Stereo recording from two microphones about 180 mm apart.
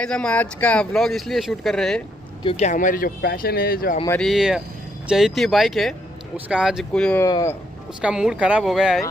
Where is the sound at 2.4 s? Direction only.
35° left (ahead or behind); by 4.0 s 55° left (ahead or behind).